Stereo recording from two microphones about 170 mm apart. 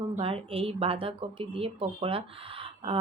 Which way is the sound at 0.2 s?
35° right (ahead or behind).